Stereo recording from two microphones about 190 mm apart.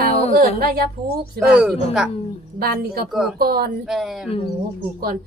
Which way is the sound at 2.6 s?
50° right (ahead or behind).